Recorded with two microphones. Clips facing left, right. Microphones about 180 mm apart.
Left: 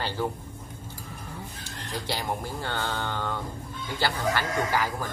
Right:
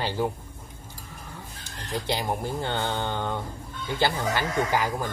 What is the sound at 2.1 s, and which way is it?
Speech, 20° right (ahead or behind).